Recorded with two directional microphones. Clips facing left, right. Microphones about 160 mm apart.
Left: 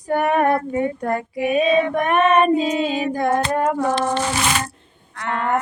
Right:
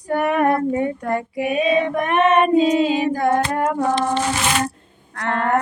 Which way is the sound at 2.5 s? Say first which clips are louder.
Right 4 dB; 25° right (ahead or behind).